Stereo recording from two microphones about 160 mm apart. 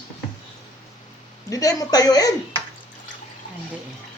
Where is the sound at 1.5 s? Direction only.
20° left (ahead or behind).